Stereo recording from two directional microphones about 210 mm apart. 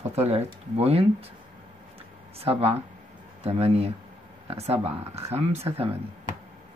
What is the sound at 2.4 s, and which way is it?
Speech, 30° right (ahead or behind).